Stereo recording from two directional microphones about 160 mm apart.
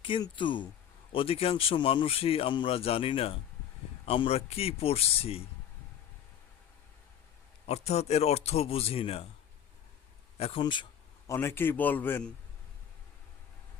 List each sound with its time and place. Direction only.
0.0 s speech: 30° left (ahead or behind)
7.7 s speech: 40° left (ahead or behind)
10.3 s speech: 40° left (ahead or behind)
11.3 s a man's voice: 15° left (ahead or behind)